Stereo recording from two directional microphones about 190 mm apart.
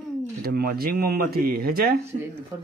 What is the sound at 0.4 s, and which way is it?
Speech, 50° right (ahead or behind).